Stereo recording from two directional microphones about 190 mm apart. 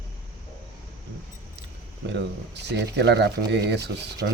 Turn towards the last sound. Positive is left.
turn(degrees=-60)  # may be behind; listen again after turning